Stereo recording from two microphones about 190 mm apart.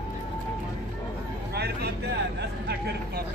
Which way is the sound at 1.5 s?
55° right (ahead or behind).